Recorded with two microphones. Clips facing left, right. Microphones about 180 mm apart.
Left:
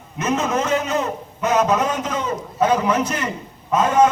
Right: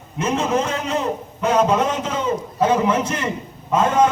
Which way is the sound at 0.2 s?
30° right (ahead or behind).